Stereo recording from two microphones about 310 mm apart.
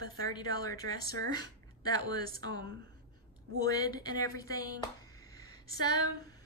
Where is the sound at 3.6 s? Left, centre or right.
Centre.